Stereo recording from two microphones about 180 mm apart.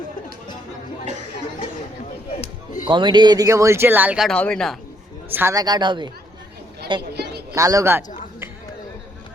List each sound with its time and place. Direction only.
2.8 s speech: 25° right (ahead or behind); by 4.8 s 5° left (ahead or behind)
5.3 s a woman's voice: 15° right (ahead or behind)
7.1 s a sound: 65° right (ahead or behind)
7.5 s speech: 20° right (ahead or behind)